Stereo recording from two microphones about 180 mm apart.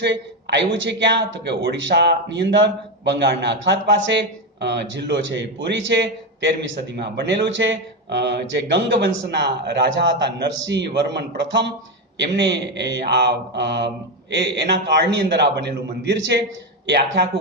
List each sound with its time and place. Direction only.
0.0 s speech: 75° right (ahead or behind)